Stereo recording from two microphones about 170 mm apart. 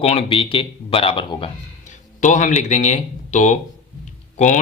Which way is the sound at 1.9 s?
45° left (ahead or behind).